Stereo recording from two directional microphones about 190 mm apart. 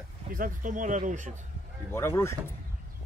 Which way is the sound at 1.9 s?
15° left (ahead or behind).